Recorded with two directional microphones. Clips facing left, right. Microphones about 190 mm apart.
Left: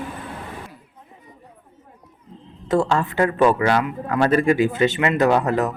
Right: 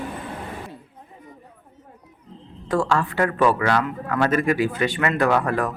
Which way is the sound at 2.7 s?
25° left (ahead or behind).